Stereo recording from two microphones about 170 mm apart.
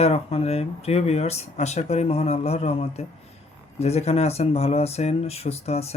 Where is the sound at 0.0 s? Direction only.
35° left (ahead or behind).